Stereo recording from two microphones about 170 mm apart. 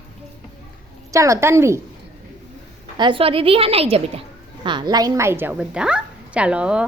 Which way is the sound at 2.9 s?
30° right (ahead or behind).